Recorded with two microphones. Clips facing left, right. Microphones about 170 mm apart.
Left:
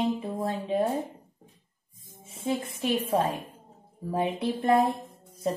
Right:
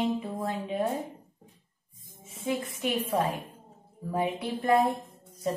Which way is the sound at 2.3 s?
30° left (ahead or behind).